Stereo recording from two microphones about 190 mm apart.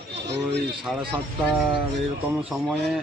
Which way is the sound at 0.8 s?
5° right (ahead or behind).